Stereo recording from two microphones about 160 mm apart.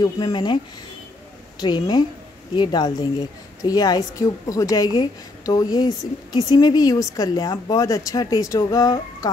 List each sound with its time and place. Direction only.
0.0 s a woman's voice: 25° left (ahead or behind)
1.6 s a woman's voice: 25° left (ahead or behind)